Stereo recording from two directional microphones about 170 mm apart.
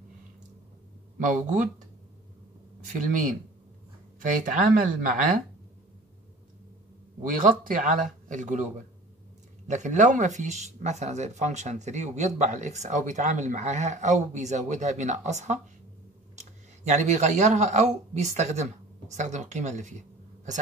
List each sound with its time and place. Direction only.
1.2 s speech: 50° right (ahead or behind)
2.8 s speech: 50° right (ahead or behind)
7.2 s speech: 50° right (ahead or behind)
9.7 s speech: 45° right (ahead or behind)